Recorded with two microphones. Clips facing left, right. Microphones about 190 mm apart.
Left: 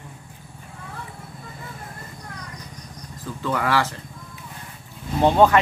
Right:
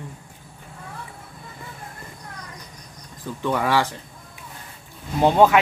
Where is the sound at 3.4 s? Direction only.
15° right (ahead or behind).